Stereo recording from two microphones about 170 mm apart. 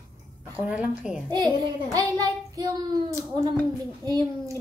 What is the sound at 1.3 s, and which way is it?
Child singing, 25° right (ahead or behind).